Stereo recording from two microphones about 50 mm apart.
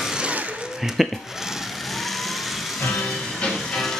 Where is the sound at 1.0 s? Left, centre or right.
Centre.